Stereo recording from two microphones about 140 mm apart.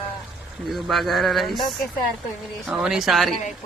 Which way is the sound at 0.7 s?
Centre (ahead or behind).